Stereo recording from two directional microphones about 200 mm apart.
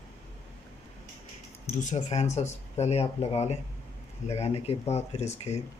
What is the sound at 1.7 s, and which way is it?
Speech, 35° left (ahead or behind).